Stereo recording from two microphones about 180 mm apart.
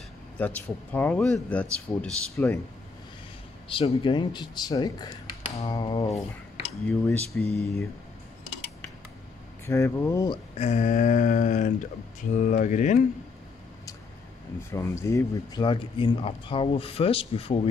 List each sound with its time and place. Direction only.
0.4 s speech: 10° left (ahead or behind)
3.6 s speech: 30° left (ahead or behind)
6.9 s speech: 5° left (ahead or behind)
9.7 s speech: 15° left (ahead or behind)
10.6 s a sound: 40° left (ahead or behind)
14.7 s speech: 15° left (ahead or behind); by 17.6 s 30° left (ahead or behind)